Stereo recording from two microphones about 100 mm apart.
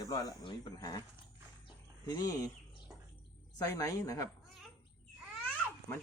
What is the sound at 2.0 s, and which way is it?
Speech, 40° left (ahead or behind).